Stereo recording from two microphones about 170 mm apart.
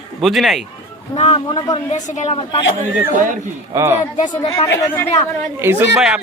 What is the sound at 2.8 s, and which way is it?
Speech, 50° right (ahead or behind).